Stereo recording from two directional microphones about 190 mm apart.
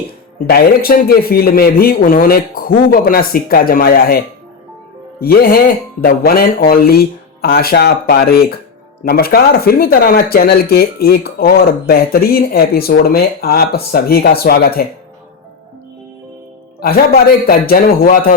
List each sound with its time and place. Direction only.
0.3 s speech: 50° left (ahead or behind)
5.2 s speech: 50° left (ahead or behind)
16.8 s speech: 50° left (ahead or behind)